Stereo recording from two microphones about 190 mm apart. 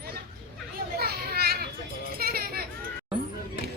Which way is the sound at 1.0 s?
55° right (ahead or behind).